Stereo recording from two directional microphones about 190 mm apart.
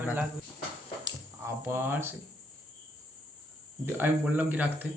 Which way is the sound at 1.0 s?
15° right (ahead or behind).